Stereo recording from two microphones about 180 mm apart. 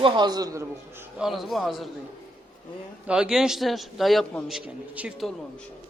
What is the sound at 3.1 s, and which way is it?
A man's voice, 5° right (ahead or behind).